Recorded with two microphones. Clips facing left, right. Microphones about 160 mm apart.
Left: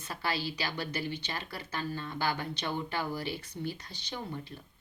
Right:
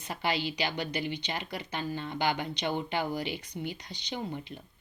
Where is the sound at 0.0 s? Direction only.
20° right (ahead or behind).